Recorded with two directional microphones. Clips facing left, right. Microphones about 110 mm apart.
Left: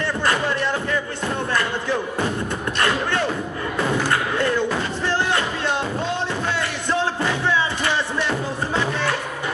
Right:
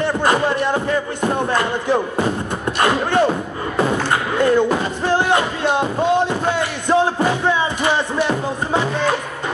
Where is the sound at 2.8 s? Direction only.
20° right (ahead or behind).